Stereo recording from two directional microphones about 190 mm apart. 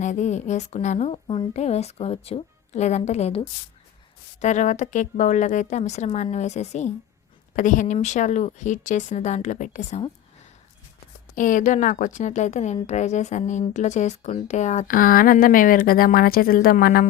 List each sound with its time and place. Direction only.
0.0 s speech: 40° left (ahead or behind)
11.3 s a woman's voice: 45° left (ahead or behind)